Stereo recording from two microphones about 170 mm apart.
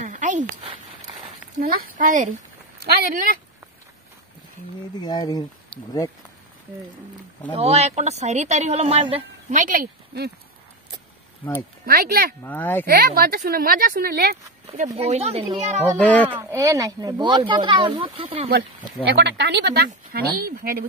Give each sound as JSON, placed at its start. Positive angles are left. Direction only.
{"t": 0.0, "sound": "a sound", "side_deg": -45}
{"t": 1.6, "sound": "speech", "side_deg": -60}
{"t": 2.8, "sound": "speech", "side_deg": -65}
{"t": 5.0, "sound": "speech", "side_deg": 20}
{"t": 7.5, "sound": "speech", "side_deg": -40}
{"t": 9.6, "sound": "speech", "side_deg": -55}
{"t": 11.8, "sound": "speech", "side_deg": -60}
{"t": 12.4, "sound": "speech", "side_deg": 10}
{"t": 12.8, "sound": "speech", "side_deg": -60}
{"t": 15.0, "sound": "speech", "side_deg": -35}
{"t": 16.0, "sound": "speech", "side_deg": 10}
{"t": 16.3, "sound": "speech", "side_deg": -20}
{"t": 19.1, "sound": "speech", "side_deg": -80}